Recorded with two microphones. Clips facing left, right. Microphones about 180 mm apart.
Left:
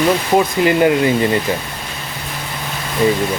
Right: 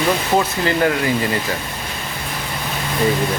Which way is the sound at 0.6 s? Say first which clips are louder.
Left 5 dB; 20° left (ahead or behind).